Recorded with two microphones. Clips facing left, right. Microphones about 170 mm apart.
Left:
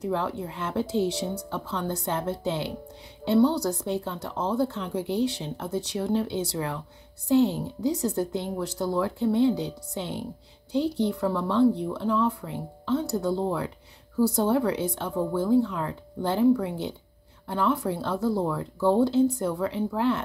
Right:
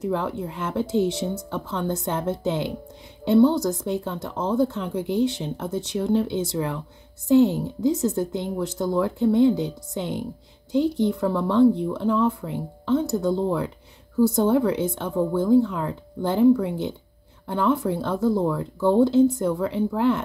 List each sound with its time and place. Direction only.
0.1 s a woman's voice: 15° right (ahead or behind)